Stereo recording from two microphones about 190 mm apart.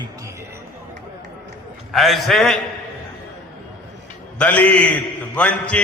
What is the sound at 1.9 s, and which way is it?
Speech, centre (ahead or behind).